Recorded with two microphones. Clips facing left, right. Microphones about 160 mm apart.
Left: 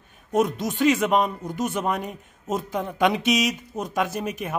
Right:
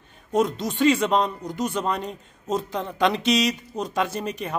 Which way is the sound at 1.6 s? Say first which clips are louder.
Even; 20° left (ahead or behind).